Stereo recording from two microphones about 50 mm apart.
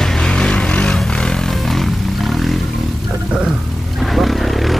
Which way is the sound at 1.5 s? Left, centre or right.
Centre.